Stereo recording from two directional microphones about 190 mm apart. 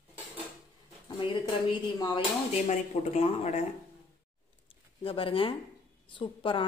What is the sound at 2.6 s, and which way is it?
Speech, 35° left (ahead or behind).